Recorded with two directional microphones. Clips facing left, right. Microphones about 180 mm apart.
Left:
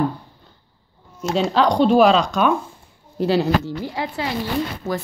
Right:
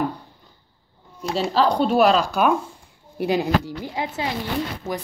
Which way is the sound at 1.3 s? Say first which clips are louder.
Left 2 dB; 5° right (ahead or behind).